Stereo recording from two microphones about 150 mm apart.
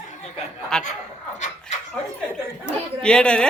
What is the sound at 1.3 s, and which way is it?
Dog, 50° left (ahead or behind).